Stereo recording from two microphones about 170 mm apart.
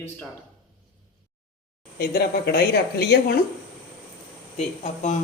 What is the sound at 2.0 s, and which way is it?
Speech, 65° left (ahead or behind).